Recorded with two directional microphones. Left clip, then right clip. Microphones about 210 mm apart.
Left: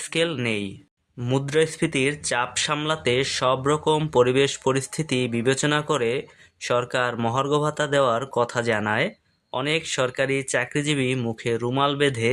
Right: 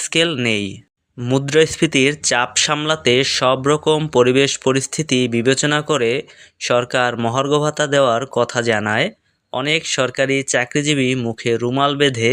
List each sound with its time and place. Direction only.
0.0 s speech: 25° right (ahead or behind)